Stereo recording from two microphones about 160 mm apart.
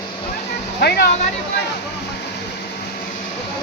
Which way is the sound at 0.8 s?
90° left.